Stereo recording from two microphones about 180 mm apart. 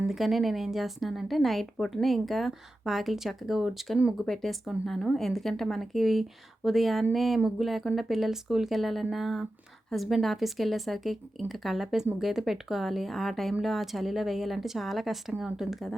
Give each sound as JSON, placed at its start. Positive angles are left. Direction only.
{"t": 0.1, "sound": "a woman's voice", "side_deg": 0}